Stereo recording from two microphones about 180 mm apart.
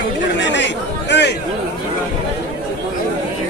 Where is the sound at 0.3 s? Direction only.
80° left.